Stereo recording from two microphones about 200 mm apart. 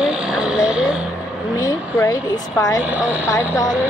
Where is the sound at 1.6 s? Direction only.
15° left (ahead or behind).